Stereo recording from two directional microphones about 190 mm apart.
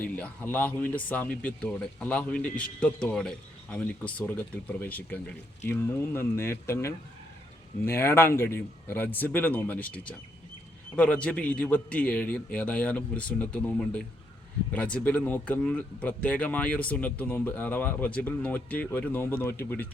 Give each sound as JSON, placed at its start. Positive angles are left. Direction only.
{"t": 0.0, "sound": "a man's voice", "side_deg": 10}